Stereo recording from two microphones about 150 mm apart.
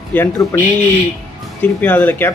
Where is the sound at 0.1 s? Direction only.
15° left (ahead or behind).